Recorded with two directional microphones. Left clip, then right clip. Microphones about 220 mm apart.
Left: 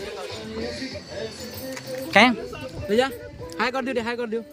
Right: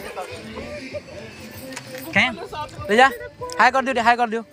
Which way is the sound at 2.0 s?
25° left (ahead or behind).